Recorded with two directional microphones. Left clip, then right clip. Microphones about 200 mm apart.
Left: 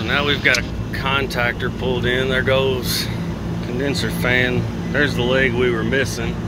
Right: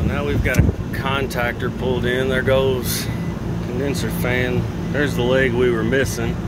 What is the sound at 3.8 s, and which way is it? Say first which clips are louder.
Speech: left 4 dB; 10° right (ahead or behind).